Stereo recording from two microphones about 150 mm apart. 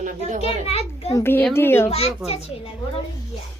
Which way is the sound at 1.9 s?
45° left (ahead or behind).